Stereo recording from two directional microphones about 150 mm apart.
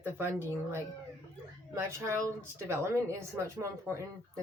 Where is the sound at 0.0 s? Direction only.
15° right (ahead or behind).